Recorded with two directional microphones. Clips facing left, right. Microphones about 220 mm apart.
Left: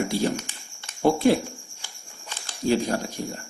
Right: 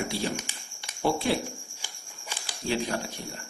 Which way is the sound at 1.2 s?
45° left (ahead or behind).